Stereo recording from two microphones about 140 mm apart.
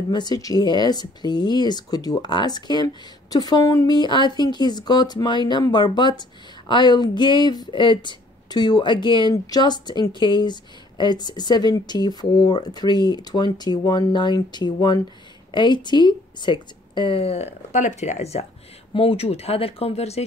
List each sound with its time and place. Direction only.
0.1 s speech: 30° left (ahead or behind); by 20.2 s 50° left (ahead or behind)